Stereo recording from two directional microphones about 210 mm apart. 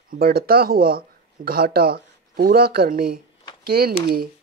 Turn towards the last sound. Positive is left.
turn(degrees=-45)  # may be behind; listen again after turning